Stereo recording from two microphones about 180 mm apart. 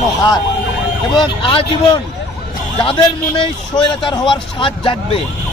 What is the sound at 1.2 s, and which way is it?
A man's voice, 30° left (ahead or behind).